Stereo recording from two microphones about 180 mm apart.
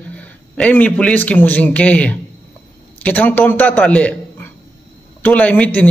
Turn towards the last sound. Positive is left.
turn(degrees=10)  # may be behind; listen again after turning